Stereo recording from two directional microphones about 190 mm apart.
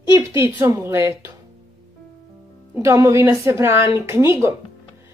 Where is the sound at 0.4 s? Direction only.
15° right (ahead or behind).